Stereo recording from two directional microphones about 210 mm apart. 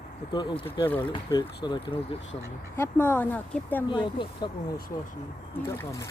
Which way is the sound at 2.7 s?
10° left (ahead or behind).